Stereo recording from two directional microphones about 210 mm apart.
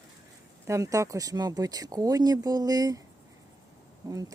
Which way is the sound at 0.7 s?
15° right (ahead or behind).